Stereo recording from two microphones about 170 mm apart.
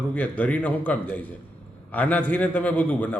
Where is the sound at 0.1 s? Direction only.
10° left (ahead or behind).